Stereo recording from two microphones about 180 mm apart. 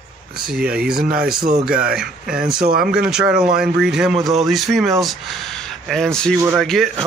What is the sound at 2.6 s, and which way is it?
Speech, 55° right (ahead or behind).